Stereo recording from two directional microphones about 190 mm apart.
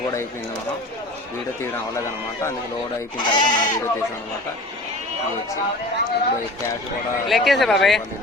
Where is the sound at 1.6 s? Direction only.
15° left (ahead or behind).